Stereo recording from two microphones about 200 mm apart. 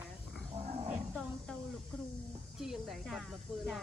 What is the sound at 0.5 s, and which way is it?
Roaring cats, 35° right (ahead or behind).